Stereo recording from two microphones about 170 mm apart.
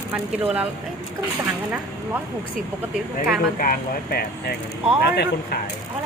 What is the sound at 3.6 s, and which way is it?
Speech, 60° left (ahead or behind).